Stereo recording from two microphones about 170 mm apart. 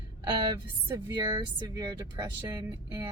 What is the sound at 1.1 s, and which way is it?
Speech, 25° right (ahead or behind).